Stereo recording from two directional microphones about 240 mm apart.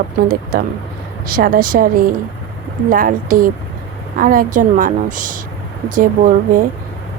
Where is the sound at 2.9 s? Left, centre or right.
Right.